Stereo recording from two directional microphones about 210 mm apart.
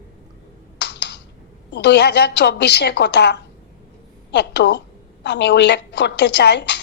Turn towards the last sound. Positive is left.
turn(degrees=55)  # may be behind; listen again after turning